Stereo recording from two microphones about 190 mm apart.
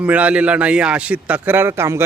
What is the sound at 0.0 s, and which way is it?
Speech, 5° right (ahead or behind).